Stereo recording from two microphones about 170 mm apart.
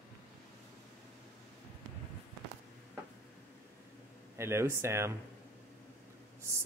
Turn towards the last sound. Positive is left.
turn(degrees=-15)  # may be behind; listen again after turning